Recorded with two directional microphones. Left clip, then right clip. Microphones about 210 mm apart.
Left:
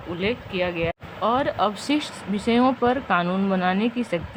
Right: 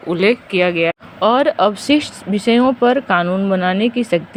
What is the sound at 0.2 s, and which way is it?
Speech, 30° right (ahead or behind).